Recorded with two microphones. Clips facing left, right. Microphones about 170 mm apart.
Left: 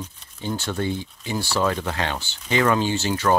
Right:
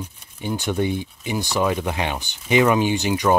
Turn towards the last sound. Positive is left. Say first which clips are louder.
# right 2 dB
turn(degrees=-15)  # may be behind; listen again after turning